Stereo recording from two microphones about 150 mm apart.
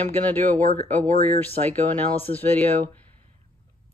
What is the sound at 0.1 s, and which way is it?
Speech, 10° left (ahead or behind).